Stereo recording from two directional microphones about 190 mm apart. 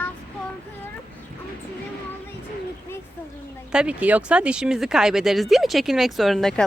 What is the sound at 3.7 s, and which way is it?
Speech, 5° right (ahead or behind).